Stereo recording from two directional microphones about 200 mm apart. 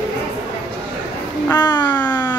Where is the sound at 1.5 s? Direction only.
20° left (ahead or behind).